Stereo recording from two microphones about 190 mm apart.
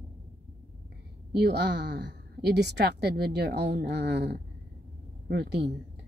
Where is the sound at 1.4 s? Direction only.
65° right (ahead or behind).